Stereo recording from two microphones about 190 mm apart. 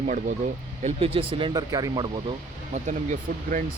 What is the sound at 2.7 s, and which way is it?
Speech, 40° right (ahead or behind).